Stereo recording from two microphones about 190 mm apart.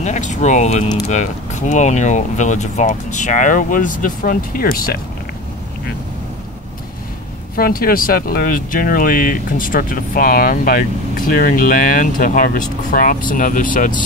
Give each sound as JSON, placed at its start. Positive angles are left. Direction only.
{"t": 0.0, "sound": "speech", "side_deg": 40}
{"t": 7.5, "sound": "speech", "side_deg": 50}